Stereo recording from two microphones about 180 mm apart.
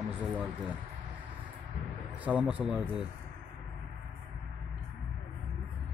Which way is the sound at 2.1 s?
10° right (ahead or behind).